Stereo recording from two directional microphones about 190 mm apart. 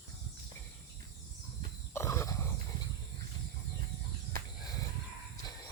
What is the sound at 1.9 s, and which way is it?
Wild animals, 15° left (ahead or behind).